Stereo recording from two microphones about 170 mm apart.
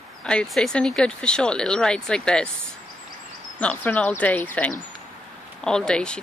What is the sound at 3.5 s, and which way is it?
Speech, 10° left (ahead or behind).